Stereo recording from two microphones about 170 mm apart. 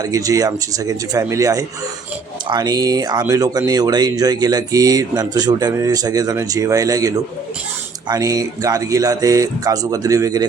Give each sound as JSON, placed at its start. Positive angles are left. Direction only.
{"t": 0.0, "sound": "speech", "side_deg": -20}